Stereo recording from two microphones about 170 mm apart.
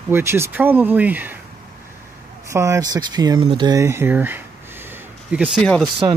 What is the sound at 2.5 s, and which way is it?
Speech, 20° right (ahead or behind).